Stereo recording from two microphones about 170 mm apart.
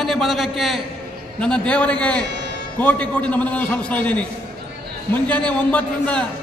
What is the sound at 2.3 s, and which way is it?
Music, 90° right.